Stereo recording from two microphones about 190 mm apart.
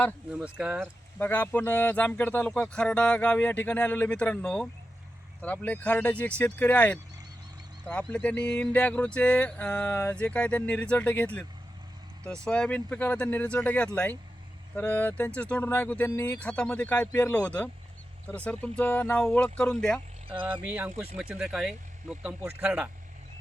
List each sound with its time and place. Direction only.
0.3 s speech: 5° right (ahead or behind)
1.2 s speech: 10° left (ahead or behind)
20.7 s speech: 10° right (ahead or behind)
20.9 s speech: 35° right (ahead or behind)
21.2 s speech: 5° right (ahead or behind)